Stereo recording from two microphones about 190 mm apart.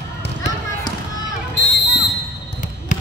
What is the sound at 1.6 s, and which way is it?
Basketball bounce, 65° left (ahead or behind).